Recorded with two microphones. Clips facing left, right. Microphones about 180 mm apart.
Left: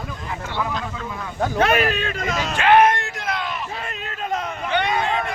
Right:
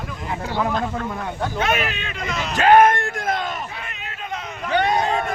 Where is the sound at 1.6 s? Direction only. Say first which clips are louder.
Left 5 dB; 40° left (ahead or behind).